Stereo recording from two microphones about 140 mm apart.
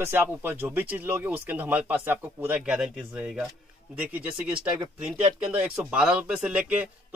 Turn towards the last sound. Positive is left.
turn(degrees=-10)  # may be behind; listen again after turning